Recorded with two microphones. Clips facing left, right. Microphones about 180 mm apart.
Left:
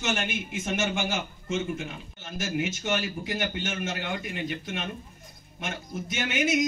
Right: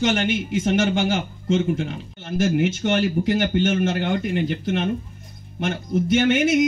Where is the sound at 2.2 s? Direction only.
55° right (ahead or behind).